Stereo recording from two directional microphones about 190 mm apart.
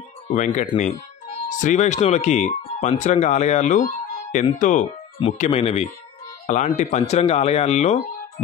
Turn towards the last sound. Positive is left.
turn(degrees=35)  # may be behind; listen again after turning